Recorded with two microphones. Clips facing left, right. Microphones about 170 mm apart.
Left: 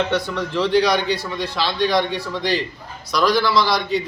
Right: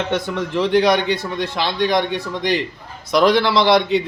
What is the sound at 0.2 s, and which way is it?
Speech, 20° right (ahead or behind).